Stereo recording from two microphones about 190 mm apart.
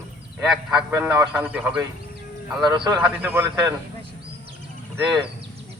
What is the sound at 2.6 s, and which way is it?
Speech, 20° right (ahead or behind).